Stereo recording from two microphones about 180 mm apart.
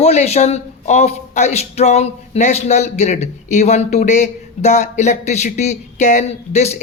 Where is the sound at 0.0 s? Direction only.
35° left (ahead or behind).